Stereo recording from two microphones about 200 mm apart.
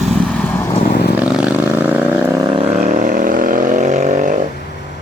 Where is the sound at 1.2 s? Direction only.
5° right (ahead or behind); by 2.7 s 25° right (ahead or behind).